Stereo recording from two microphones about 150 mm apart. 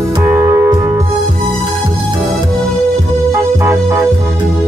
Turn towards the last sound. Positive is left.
turn(degrees=-20)  # may be behind; listen again after turning